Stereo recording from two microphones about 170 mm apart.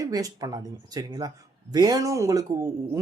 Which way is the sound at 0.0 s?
20° right (ahead or behind).